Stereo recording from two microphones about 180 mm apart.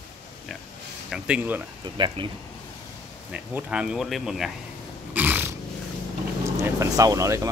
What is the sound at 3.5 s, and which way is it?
Speech, 5° right (ahead or behind).